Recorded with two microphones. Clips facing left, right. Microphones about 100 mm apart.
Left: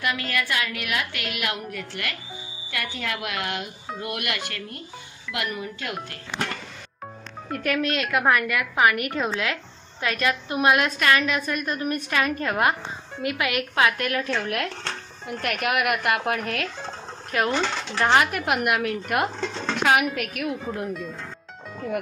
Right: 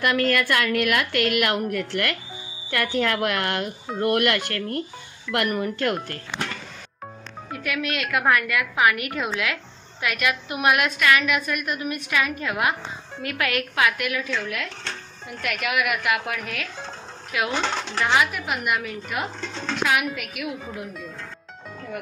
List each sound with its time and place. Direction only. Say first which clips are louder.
0.0 s a woman's voice: right 6 dB; 55° right (ahead or behind)
7.6 s a woman's voice: left 3 dB; 35° left (ahead or behind)
13.2 s a woman's voice: left 1 dB; 20° left (ahead or behind); by 14.7 s 60° left (ahead or behind)
15.4 s a woman's voice: left 1 dB; 50° left (ahead or behind)
17.3 s a woman's voice: left 1 dB; 40° left (ahead or behind); by 20.1 s 60° left (ahead or behind)
20.4 s speech: left 3 dB; 5° right (ahead or behind)